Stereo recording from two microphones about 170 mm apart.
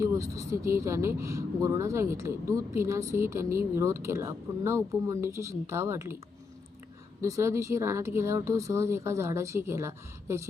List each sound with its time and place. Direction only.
0.0 s speech: 20° right (ahead or behind)
7.2 s speech: 15° right (ahead or behind)